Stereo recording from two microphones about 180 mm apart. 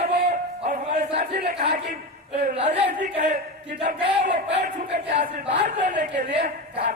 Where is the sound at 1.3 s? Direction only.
55° right (ahead or behind).